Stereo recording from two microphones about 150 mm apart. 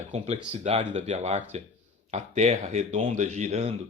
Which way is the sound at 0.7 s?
50° right (ahead or behind).